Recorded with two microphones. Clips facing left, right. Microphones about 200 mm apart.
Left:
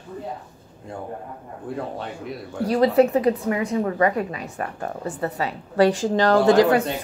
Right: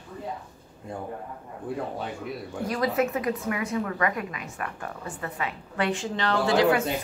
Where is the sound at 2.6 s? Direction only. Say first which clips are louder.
Left 9 dB; 35° left (ahead or behind).